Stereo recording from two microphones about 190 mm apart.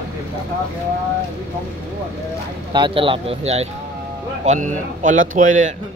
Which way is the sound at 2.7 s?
25° right (ahead or behind).